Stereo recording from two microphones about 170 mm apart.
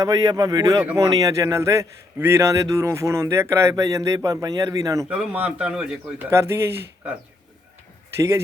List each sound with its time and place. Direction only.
0.0 s a man's voice: 25° right (ahead or behind)
5.0 s a man's voice: 5° right (ahead or behind)